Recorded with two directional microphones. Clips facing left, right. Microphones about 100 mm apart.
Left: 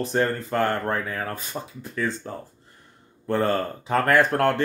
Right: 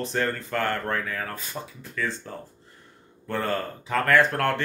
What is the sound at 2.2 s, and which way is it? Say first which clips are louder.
Speech: left 3 dB; 25° left (ahead or behind).